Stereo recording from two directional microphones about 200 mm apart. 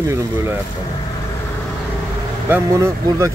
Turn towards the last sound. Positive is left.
turn(degrees=-15)  # may be behind; listen again after turning